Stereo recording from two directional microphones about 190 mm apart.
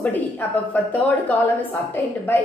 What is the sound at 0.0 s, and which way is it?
A woman's voice, 10° left (ahead or behind).